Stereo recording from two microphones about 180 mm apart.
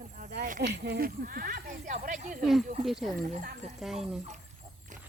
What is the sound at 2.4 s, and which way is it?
Speech, centre (ahead or behind).